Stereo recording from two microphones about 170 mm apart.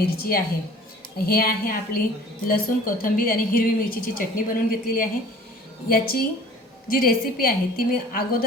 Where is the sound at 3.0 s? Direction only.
55° left (ahead or behind).